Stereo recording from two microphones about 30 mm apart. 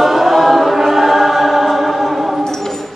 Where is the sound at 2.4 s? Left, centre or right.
Left.